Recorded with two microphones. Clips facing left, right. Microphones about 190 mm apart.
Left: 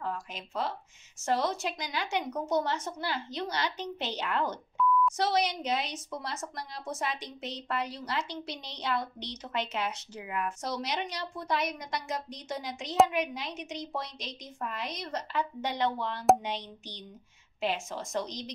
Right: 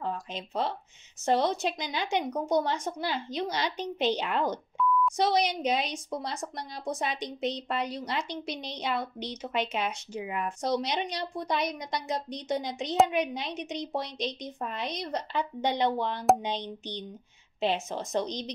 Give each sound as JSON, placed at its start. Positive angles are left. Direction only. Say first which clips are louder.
{"t": 0.0, "sound": "a sound", "louder": "right 3 dB", "side_deg": -20}
{"t": 1.2, "sound": "a woman's voice", "louder": "right 4 dB", "side_deg": -20}
{"t": 4.8, "sound": "beep", "louder": "even", "side_deg": 0}
{"t": 5.1, "sound": "a woman's voice", "louder": "right 3 dB", "side_deg": -15}
{"t": 10.2, "sound": "a woman's voice", "louder": "right 2 dB", "side_deg": -25}